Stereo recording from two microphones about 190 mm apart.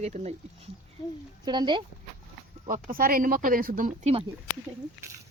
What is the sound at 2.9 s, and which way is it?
Speech, 50° right (ahead or behind).